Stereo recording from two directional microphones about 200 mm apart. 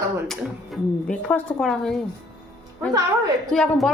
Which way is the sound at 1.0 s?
5° left (ahead or behind).